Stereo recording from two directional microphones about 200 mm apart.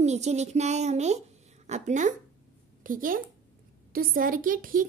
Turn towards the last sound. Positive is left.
turn(degrees=-45)  # may be behind; listen again after turning